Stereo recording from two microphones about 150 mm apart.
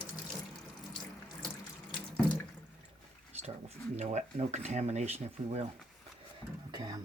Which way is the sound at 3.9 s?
50° right (ahead or behind).